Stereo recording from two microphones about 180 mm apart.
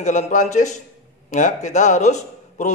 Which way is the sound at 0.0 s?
45° left (ahead or behind).